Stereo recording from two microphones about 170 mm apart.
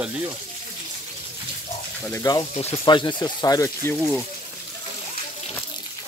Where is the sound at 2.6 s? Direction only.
30° left (ahead or behind); by 4.2 s 10° left (ahead or behind).